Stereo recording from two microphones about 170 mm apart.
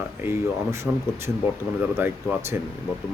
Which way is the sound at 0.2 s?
15° right (ahead or behind).